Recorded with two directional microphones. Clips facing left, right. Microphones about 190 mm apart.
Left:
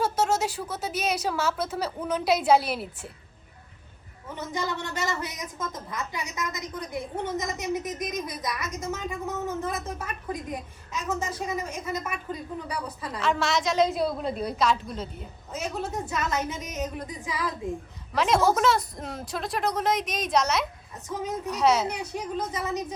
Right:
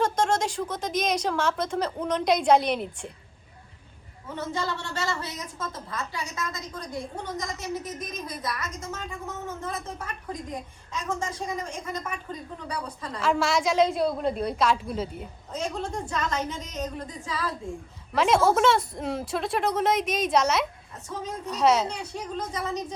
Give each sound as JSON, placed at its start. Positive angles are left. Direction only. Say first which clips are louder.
{"t": 0.0, "sound": "a woman's voice", "louder": "right 1 dB", "side_deg": 5}
{"t": 4.4, "sound": "a woman's voice", "louder": "even", "side_deg": 15}
{"t": 13.2, "sound": "a woman's voice", "louder": "right 2 dB", "side_deg": -10}
{"t": 13.7, "sound": "a woman's voice", "louder": "right 1 dB", "side_deg": 5}
{"t": 15.5, "sound": "a woman's voice", "louder": "even", "side_deg": 5}
{"t": 18.1, "sound": "a woman's voice", "louder": "right 1 dB", "side_deg": 0}
{"t": 21.1, "sound": "a woman's voice", "louder": "left 3 dB", "side_deg": 10}